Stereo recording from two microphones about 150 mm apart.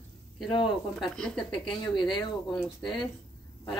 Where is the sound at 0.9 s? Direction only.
Centre (ahead or behind).